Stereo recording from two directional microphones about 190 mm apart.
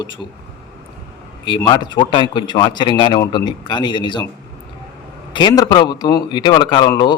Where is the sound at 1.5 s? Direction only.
25° left (ahead or behind).